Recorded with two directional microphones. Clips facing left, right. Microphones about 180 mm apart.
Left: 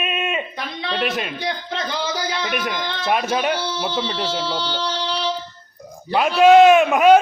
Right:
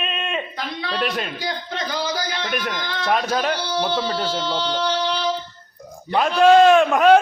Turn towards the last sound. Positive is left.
turn(degrees=5)  # may be behind; listen again after turning